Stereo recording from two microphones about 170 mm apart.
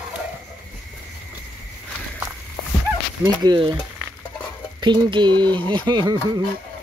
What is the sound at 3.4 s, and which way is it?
Speech, 30° right (ahead or behind).